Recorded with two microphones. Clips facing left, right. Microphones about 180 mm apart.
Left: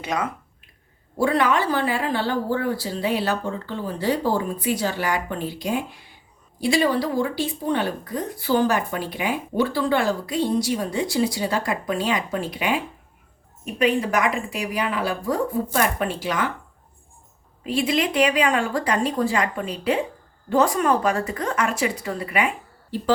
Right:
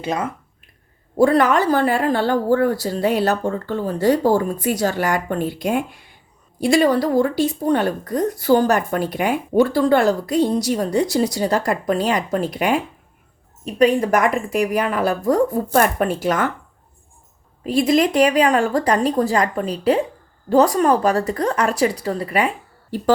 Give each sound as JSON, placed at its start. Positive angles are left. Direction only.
{"t": 0.0, "sound": "speech", "side_deg": -30}
{"t": 1.2, "sound": "speech", "side_deg": -45}
{"t": 17.6, "sound": "speech", "side_deg": -40}